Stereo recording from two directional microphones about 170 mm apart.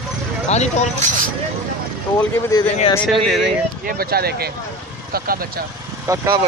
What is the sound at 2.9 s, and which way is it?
Speech, 5° left (ahead or behind).